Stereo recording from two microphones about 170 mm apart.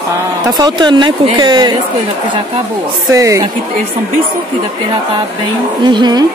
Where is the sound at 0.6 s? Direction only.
25° right (ahead or behind).